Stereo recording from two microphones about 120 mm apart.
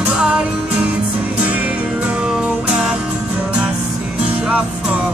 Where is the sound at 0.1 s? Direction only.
10° right (ahead or behind).